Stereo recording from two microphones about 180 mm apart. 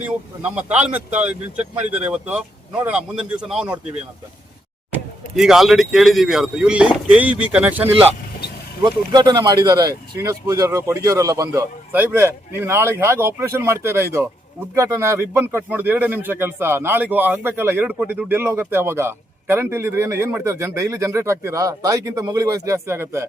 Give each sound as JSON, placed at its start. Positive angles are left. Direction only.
{"t": 0.0, "sound": "a man's voice", "side_deg": -5}
{"t": 5.4, "sound": "speech", "side_deg": 0}
{"t": 8.8, "sound": "a man's voice", "side_deg": -25}